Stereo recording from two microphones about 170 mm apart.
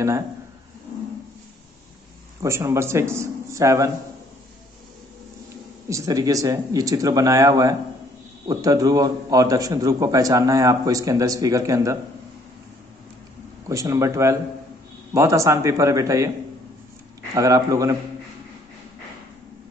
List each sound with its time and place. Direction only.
2.4 s a man's voice: 15° right (ahead or behind)
5.9 s a man's voice: 20° right (ahead or behind)
13.7 s a man's voice: 20° right (ahead or behind)
17.3 s a man's voice: 20° right (ahead or behind)